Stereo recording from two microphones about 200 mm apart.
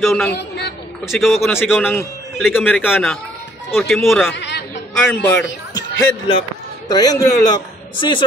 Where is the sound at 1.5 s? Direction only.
10° left (ahead or behind).